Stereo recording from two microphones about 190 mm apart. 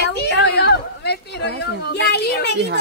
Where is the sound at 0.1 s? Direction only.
60° left (ahead or behind).